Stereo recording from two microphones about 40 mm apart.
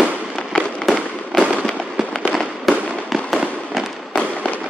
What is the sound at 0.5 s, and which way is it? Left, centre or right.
Fireworks, left.